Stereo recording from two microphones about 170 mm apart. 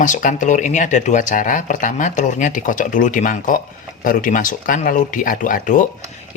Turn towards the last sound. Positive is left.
turn(degrees=50)  # may be behind; listen again after turning